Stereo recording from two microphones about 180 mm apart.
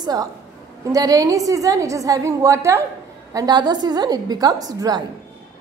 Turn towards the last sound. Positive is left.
turn(degrees=-20)  # may be behind; listen again after turning